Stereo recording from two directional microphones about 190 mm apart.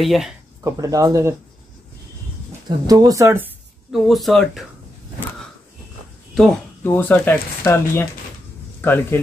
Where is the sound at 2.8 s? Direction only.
20° right (ahead or behind).